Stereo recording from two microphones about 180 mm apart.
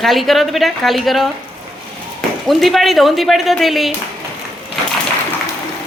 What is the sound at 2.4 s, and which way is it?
Speech, centre (ahead or behind).